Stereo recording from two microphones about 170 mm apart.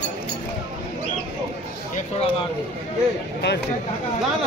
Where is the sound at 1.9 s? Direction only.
35° left (ahead or behind).